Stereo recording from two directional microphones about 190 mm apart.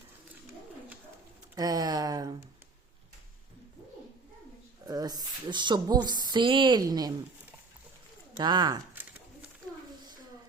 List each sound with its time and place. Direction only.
1.5 s a woman's voice: 20° right (ahead or behind)
4.9 s a woman's voice: 20° right (ahead or behind)
8.4 s a woman's voice: 20° right (ahead or behind)